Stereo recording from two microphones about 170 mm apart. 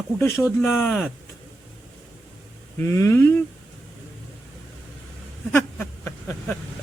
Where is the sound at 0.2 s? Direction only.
15° left (ahead or behind).